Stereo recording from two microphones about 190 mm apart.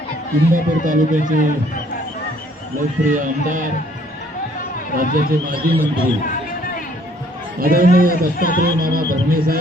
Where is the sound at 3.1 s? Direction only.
45° right (ahead or behind).